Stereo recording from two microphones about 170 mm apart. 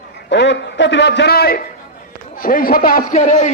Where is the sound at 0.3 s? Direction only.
90° left.